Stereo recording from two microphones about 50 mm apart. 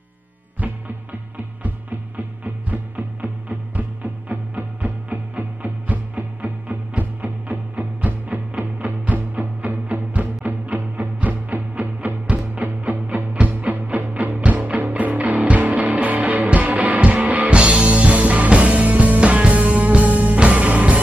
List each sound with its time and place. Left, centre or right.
2.1 s music: right